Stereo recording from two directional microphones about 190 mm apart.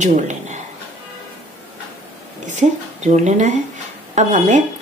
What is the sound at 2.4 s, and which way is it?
Speech, 40° right (ahead or behind).